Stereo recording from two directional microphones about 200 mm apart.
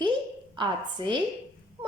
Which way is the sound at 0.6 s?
25° right (ahead or behind).